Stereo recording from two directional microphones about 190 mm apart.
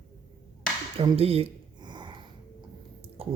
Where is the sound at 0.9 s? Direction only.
30° right (ahead or behind).